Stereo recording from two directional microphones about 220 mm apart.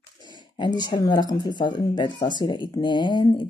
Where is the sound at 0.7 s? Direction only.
20° left (ahead or behind).